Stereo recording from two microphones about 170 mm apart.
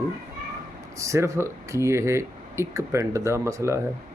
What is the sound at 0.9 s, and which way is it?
Speech, 20° right (ahead or behind).